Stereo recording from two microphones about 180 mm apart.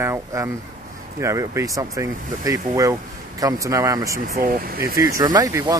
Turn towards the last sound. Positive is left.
turn(degrees=-20)  # may be behind; listen again after turning